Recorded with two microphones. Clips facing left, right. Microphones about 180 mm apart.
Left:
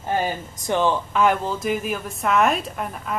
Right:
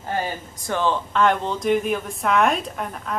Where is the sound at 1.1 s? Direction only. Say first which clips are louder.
Even; 5° left (ahead or behind).